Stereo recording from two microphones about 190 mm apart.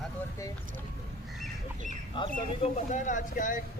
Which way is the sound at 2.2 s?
35° left (ahead or behind).